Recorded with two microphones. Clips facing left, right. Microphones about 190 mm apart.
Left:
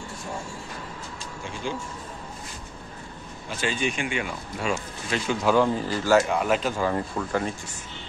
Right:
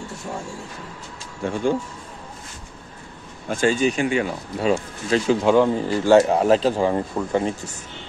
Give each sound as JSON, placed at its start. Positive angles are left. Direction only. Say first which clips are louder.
{"t": 1.4, "sound": "speech", "louder": "right 11 dB", "side_deg": -55}
{"t": 3.4, "sound": "speech", "louder": "right 8 dB", "side_deg": -45}
{"t": 5.5, "sound": "speech", "louder": "right 3 dB", "side_deg": -20}
{"t": 6.9, "sound": "speech", "louder": "right 5 dB", "side_deg": -20}